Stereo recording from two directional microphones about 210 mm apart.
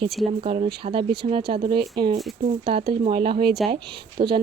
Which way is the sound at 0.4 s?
30° right (ahead or behind).